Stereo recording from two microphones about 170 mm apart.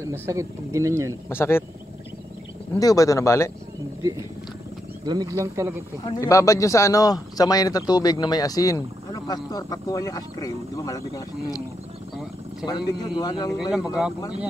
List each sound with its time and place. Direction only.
0.0 s speech: 15° right (ahead or behind)
1.3 s speech: 15° left (ahead or behind)
2.7 s speech: 20° left (ahead or behind)
4.0 s speech: 20° right (ahead or behind)
6.2 s speech: 20° left (ahead or behind)
12.6 s speech: 25° left (ahead or behind)
13.5 s speech: centre (ahead or behind)
13.7 s speech: 20° left (ahead or behind)